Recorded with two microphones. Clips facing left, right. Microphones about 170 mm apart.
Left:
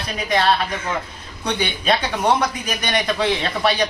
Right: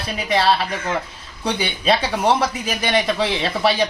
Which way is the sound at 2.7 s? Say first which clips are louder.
Right 3 dB; 25° right (ahead or behind).